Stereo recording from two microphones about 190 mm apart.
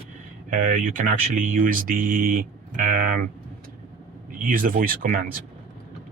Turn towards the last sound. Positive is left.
turn(degrees=-45)  # may be behind; listen again after turning